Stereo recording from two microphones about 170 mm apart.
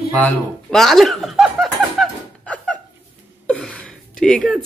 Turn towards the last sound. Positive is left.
turn(degrees=0)  # may be behind; listen again after turning